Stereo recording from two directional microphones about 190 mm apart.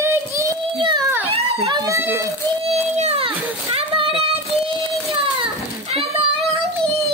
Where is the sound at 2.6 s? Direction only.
35° right (ahead or behind).